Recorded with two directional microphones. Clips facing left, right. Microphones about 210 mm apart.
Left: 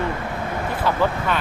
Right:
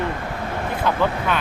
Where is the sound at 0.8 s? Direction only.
5° right (ahead or behind).